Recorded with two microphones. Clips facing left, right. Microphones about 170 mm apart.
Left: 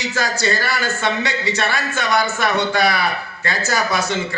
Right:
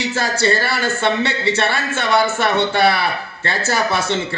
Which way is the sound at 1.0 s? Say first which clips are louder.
Right 5 dB; 60° right (ahead or behind).